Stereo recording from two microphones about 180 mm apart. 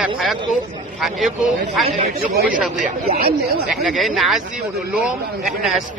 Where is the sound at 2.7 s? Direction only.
50° right (ahead or behind).